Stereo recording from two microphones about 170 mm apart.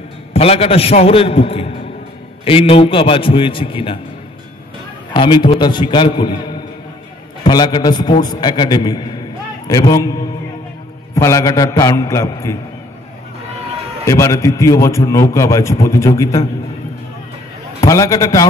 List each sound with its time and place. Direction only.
0.3 s a man's voice: 35° left (ahead or behind)
5.1 s a man's voice: 30° left (ahead or behind)
7.4 s a man's voice: 25° left (ahead or behind)
11.1 s a man's voice: 20° left (ahead or behind)
14.0 s a man's voice: 20° left (ahead or behind)
17.7 s a man's voice: 20° left (ahead or behind)